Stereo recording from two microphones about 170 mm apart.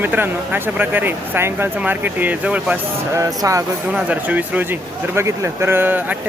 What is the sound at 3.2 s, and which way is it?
Speech, 20° right (ahead or behind).